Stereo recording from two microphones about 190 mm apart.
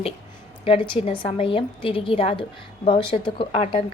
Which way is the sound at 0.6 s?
30° left (ahead or behind).